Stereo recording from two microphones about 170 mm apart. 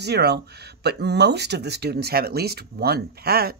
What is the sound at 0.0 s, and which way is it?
Speech, 75° right (ahead or behind).